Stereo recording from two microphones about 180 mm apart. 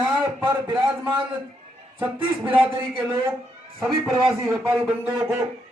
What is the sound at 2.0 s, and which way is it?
Speech, 10° right (ahead or behind).